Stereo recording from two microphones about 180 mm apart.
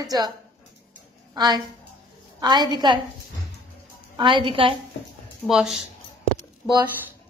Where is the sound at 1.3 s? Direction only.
25° right (ahead or behind).